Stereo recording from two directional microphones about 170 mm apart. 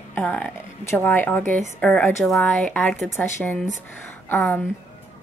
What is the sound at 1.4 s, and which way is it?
Speech, 50° right (ahead or behind).